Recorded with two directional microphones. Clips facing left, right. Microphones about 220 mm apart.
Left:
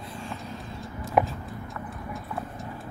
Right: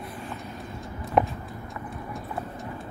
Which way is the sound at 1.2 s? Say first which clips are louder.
Right 1 dB; 5° left (ahead or behind).